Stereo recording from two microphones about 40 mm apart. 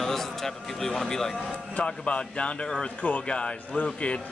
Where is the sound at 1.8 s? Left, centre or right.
Left.